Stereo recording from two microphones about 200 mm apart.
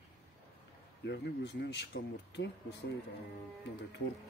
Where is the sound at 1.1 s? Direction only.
60° left (ahead or behind).